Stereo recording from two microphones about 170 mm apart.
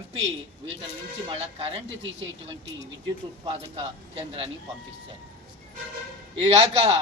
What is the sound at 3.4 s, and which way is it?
A man's voice, 30° right (ahead or behind).